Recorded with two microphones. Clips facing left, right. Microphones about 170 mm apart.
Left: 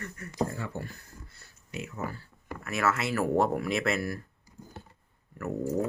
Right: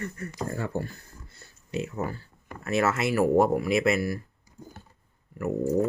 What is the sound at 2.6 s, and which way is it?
Speech, 25° right (ahead or behind).